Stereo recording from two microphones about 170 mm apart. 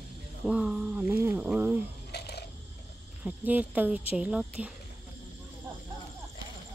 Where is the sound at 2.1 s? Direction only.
75° left (ahead or behind).